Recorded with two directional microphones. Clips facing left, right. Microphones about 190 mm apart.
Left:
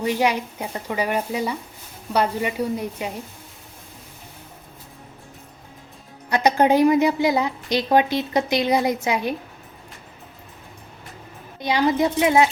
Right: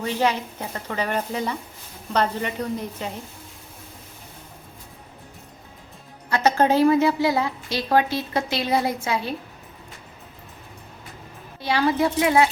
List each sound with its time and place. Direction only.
0.0 s a woman's voice: 15° left (ahead or behind)
6.3 s a woman's voice: 15° left (ahead or behind)
11.6 s a woman's voice: 20° left (ahead or behind)